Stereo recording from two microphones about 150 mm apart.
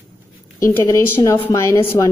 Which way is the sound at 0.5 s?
20° left (ahead or behind).